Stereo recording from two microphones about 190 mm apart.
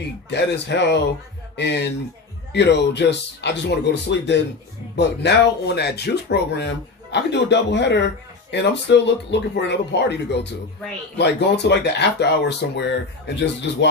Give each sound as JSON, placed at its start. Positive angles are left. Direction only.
{"t": 0.3, "sound": "speech", "side_deg": 65}